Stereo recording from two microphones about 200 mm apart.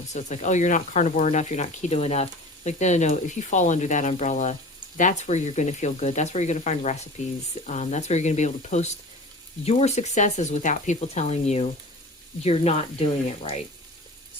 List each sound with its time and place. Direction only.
0.1 s speech: 35° left (ahead or behind)